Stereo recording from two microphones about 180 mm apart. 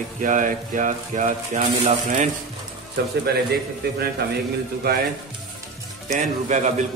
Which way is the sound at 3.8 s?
60° right (ahead or behind).